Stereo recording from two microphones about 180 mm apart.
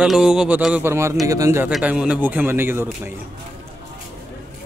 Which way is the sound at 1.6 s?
5° right (ahead or behind).